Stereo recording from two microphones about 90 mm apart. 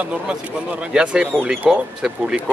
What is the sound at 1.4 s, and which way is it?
A man's voice, 10° right (ahead or behind).